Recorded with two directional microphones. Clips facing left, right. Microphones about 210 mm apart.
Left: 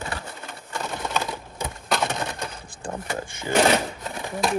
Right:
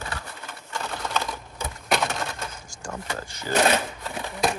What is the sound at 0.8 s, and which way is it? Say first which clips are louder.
Typewriter: left 2 dB; 20° left (ahead or behind).